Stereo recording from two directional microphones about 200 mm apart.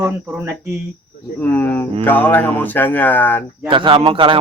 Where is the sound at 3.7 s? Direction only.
25° right (ahead or behind).